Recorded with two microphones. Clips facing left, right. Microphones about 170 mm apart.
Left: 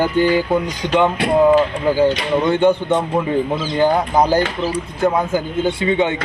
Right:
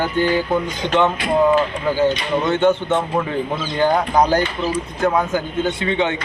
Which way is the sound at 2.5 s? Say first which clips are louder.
Left 1 dB; 15° left (ahead or behind).